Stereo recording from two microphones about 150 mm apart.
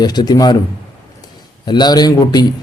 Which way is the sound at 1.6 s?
30° left (ahead or behind).